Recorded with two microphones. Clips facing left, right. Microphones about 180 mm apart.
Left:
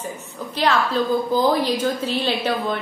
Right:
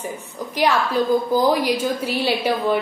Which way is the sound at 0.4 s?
15° right (ahead or behind).